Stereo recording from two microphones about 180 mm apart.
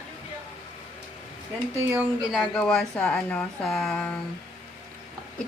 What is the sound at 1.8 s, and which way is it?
A woman's voice, 10° right (ahead or behind).